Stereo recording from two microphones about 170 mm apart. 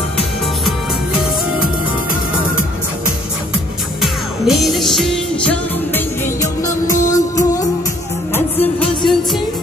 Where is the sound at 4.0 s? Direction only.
Centre (ahead or behind); by 8.4 s 15° left (ahead or behind).